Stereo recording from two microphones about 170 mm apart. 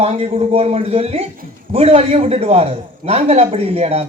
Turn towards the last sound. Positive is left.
turn(degrees=-35)  # may be behind; listen again after turning